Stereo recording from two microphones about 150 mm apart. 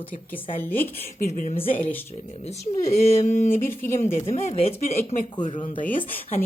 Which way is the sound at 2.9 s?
45° left (ahead or behind).